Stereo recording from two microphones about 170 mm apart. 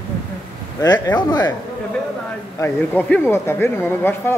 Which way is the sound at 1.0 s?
25° left (ahead or behind).